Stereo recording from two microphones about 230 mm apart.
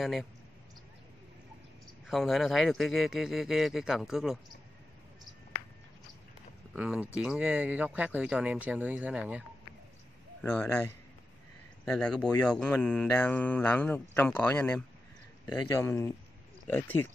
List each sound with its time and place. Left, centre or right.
0.0 s speech: centre
2.0 s speech: centre
6.7 s speech: centre
10.4 s speech: centre